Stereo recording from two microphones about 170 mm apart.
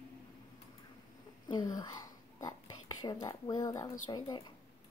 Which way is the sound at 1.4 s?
25° left (ahead or behind).